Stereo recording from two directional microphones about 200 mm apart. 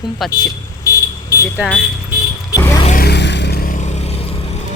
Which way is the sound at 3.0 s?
55° left (ahead or behind).